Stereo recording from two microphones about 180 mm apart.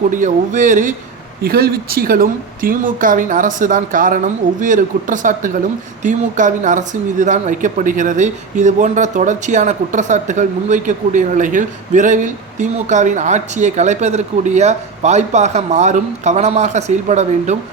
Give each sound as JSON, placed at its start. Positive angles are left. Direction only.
{"t": 0.1, "sound": "speech", "side_deg": -45}
{"t": 1.4, "sound": "speech", "side_deg": -60}